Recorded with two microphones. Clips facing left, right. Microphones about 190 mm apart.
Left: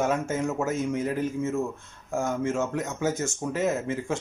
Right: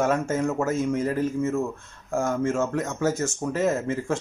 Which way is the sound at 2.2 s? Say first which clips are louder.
Right 3 dB; 5° left (ahead or behind).